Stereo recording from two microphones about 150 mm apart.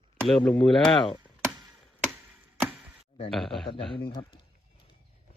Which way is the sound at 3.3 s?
Centre (ahead or behind).